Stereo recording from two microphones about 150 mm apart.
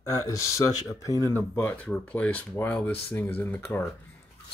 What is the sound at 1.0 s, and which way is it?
Speech, 20° left (ahead or behind).